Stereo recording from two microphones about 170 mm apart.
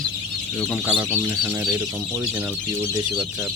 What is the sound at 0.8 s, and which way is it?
Speech, 5° right (ahead or behind).